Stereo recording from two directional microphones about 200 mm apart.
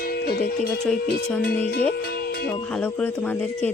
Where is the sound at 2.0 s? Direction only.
50° left (ahead or behind).